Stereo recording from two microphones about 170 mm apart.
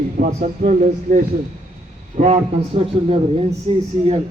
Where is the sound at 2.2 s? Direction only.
45° right (ahead or behind).